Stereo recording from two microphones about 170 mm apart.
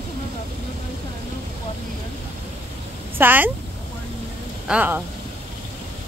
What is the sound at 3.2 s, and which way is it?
Speech, 10° right (ahead or behind).